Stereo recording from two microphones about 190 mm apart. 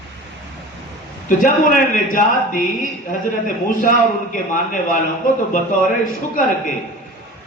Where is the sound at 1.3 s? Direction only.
45° left (ahead or behind).